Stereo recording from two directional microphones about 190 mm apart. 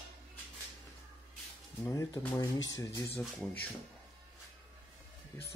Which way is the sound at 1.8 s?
15° left (ahead or behind).